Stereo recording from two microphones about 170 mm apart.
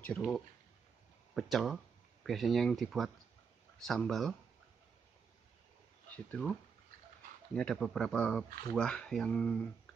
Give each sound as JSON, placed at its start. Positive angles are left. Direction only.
{"t": 0.0, "sound": "speech", "side_deg": 5}
{"t": 6.1, "sound": "speech", "side_deg": 10}
{"t": 7.5, "sound": "speech", "side_deg": 5}